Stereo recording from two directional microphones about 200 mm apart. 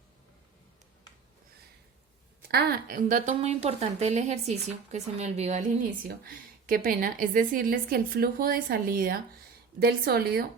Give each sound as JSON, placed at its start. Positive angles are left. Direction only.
{"t": 2.5, "sound": "a woman's voice", "side_deg": -50}